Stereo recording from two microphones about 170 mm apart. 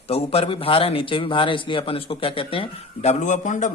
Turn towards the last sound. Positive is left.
turn(degrees=45)  # may be behind; listen again after turning